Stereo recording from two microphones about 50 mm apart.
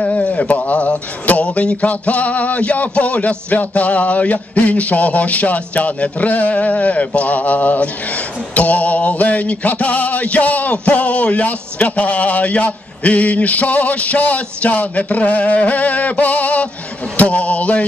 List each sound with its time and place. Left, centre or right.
0.0 s speech: left